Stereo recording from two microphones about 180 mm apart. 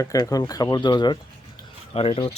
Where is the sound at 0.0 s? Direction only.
20° left (ahead or behind).